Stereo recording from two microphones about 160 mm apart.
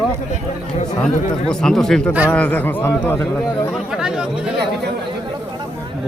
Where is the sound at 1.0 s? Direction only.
5° left (ahead or behind).